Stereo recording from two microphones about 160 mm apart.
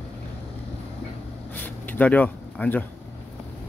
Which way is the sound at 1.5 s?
10° left (ahead or behind).